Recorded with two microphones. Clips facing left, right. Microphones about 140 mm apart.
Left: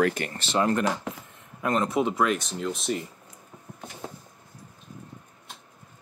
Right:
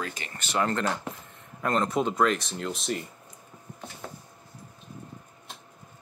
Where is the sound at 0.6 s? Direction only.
15° left (ahead or behind).